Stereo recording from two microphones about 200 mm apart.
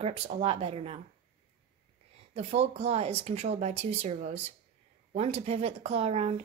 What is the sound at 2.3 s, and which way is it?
Speech, 30° right (ahead or behind).